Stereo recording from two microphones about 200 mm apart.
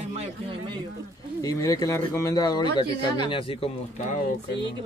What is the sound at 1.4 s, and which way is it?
Speech, 15° left (ahead or behind).